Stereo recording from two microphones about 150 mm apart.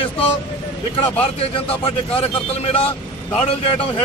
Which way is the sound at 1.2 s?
40° left (ahead or behind).